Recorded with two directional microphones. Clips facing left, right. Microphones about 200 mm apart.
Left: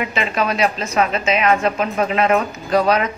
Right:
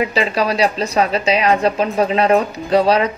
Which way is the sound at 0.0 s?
35° right (ahead or behind).